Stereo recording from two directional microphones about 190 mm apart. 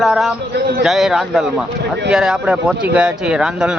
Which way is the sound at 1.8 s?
65° right (ahead or behind).